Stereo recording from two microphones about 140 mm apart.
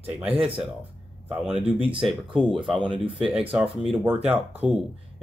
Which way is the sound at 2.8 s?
35° right (ahead or behind).